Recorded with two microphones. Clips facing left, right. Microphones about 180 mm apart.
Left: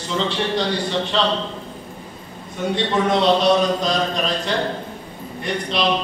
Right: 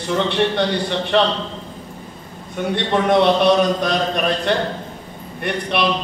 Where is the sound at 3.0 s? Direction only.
60° right (ahead or behind).